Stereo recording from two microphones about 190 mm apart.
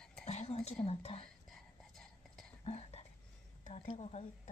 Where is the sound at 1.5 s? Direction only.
Centre (ahead or behind).